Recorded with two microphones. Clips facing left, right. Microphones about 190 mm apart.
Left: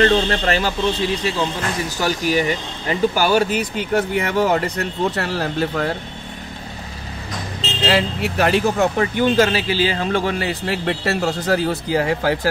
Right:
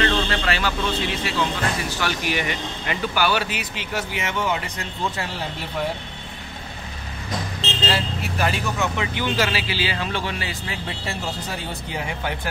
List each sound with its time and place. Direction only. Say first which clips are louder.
0.0 s speech: left 6 dB; 45° left (ahead or behind); by 5.9 s 85° left
7.9 s speech: left 6 dB; 65° left (ahead or behind)
8.7 s speech: left 7 dB; 50° left (ahead or behind); by 12.4 s 75° left (ahead or behind)